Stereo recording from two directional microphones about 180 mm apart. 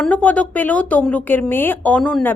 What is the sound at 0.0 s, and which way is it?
A woman's voice, 10° left (ahead or behind).